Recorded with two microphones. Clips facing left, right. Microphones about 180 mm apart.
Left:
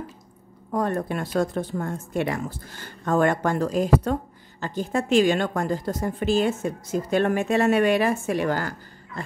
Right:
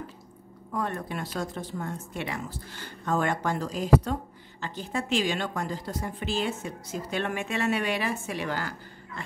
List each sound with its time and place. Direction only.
0.7 s speech: 40° left (ahead or behind)